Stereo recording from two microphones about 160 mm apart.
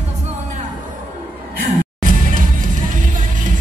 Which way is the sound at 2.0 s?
55° right (ahead or behind).